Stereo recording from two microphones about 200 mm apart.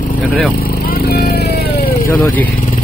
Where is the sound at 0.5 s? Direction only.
50° left (ahead or behind).